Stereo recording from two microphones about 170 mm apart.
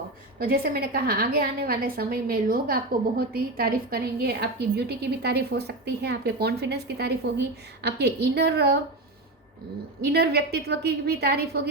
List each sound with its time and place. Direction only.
0.3 s a woman's voice: 60° right (ahead or behind)
10.0 s a woman's voice: 70° right (ahead or behind)